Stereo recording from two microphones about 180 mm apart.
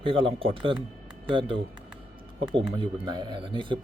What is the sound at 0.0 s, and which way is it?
A man's voice, 30° right (ahead or behind).